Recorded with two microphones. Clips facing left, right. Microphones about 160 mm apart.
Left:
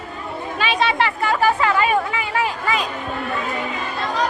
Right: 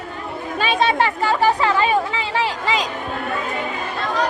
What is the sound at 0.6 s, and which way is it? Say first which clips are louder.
Speech: right 2 dB; 45° right (ahead or behind).